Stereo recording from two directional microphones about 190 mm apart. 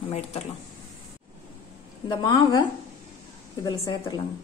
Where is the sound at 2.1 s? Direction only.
25° left (ahead or behind).